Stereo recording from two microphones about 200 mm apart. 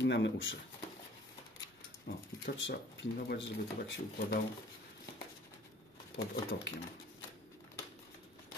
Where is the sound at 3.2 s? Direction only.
65° left (ahead or behind).